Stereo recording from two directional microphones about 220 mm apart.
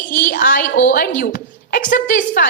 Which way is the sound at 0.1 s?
40° left (ahead or behind).